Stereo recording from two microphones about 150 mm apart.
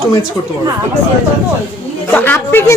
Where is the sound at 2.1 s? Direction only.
15° left (ahead or behind).